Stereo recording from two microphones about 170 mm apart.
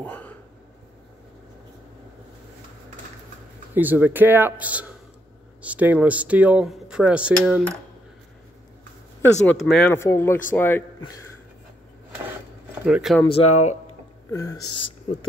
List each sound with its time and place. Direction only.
0.0 s a sound: 10° left (ahead or behind)
3.7 s speech: 10° right (ahead or behind)
9.2 s speech: 5° left (ahead or behind)
12.8 s speech: 5° right (ahead or behind)
13.3 s speech: 40° left (ahead or behind)
14.3 s speech: 20° left (ahead or behind)